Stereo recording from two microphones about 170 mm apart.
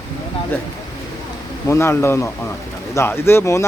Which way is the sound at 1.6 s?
15° left (ahead or behind).